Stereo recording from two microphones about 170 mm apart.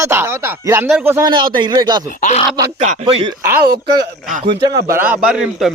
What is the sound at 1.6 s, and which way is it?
Speech, 25° right (ahead or behind).